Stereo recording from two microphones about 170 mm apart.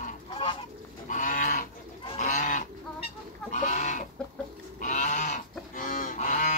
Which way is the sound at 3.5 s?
45° left (ahead or behind).